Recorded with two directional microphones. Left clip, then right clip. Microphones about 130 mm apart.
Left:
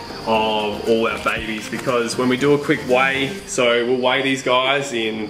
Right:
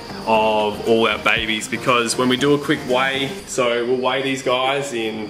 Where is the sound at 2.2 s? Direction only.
25° right (ahead or behind).